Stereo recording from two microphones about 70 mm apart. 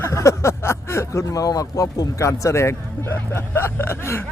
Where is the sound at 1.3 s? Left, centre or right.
Left.